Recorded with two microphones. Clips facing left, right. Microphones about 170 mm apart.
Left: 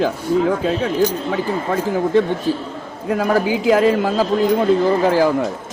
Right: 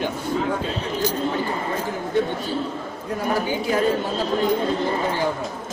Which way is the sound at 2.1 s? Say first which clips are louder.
Left 3 dB; 90° left.